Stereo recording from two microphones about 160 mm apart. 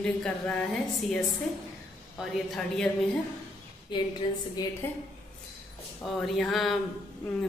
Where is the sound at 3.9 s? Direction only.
30° left (ahead or behind).